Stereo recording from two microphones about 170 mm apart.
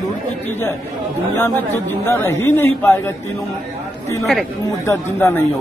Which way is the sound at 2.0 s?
15° left (ahead or behind).